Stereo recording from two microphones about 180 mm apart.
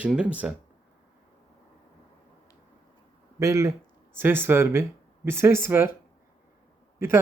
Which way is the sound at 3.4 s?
15° right (ahead or behind).